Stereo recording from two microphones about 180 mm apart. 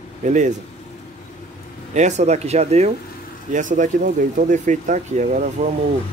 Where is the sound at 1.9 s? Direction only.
40° right (ahead or behind).